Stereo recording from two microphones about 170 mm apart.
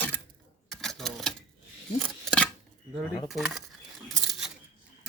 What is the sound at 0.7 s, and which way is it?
Typewriter, centre (ahead or behind).